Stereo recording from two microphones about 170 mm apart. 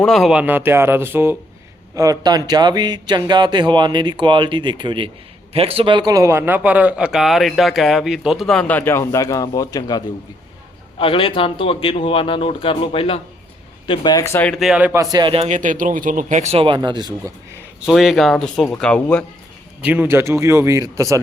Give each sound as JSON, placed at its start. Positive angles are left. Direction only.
{"t": 0.0, "sound": "a man's voice", "side_deg": 0}
{"t": 15.1, "sound": "speech", "side_deg": -30}
{"t": 17.7, "sound": "a man's voice", "side_deg": 0}
{"t": 19.8, "sound": "speech", "side_deg": -10}